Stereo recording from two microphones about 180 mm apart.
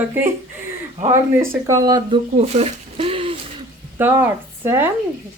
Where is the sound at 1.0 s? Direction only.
40° right (ahead or behind).